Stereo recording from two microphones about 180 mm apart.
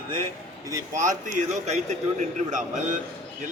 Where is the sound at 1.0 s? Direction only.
45° right (ahead or behind).